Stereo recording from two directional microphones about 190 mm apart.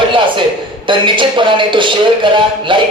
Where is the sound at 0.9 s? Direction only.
25° right (ahead or behind).